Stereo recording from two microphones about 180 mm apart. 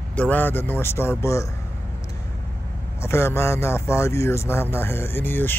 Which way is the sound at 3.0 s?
15° left (ahead or behind).